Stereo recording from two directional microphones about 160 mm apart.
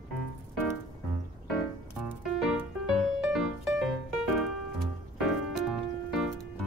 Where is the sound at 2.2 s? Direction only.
Centre (ahead or behind).